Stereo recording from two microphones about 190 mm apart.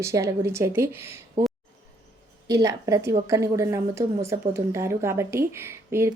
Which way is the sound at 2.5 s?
15° right (ahead or behind).